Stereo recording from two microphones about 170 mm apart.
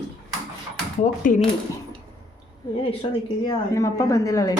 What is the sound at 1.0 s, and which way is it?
Speech, 50° left (ahead or behind).